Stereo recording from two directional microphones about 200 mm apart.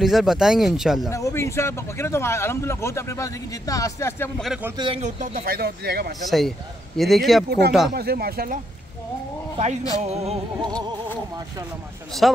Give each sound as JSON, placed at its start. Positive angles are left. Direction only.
{"t": 0.0, "sound": "speech", "side_deg": 0}
{"t": 1.1, "sound": "speech", "side_deg": 15}
{"t": 4.4, "sound": "speech", "side_deg": -5}
{"t": 4.7, "sound": "speech", "side_deg": -25}
{"t": 5.2, "sound": "speech", "side_deg": -45}
{"t": 6.2, "sound": "speech", "side_deg": 0}
{"t": 7.4, "sound": "speech", "side_deg": -55}
{"t": 10.0, "sound": "music", "side_deg": -30}
{"t": 12.2, "sound": "speech", "side_deg": 0}